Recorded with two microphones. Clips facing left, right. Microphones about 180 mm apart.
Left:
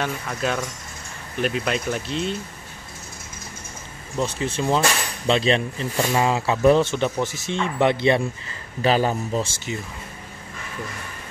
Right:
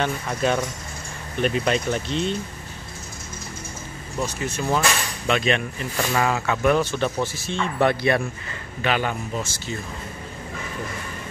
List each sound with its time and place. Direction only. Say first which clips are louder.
0.4 s speech: right 4 dB; centre (ahead or behind)
4.2 s speech: left 3 dB; 30° left (ahead or behind)
8.8 s speech: left 4 dB; 35° left (ahead or behind)